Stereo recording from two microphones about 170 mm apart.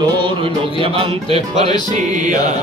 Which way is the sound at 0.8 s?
35° right (ahead or behind).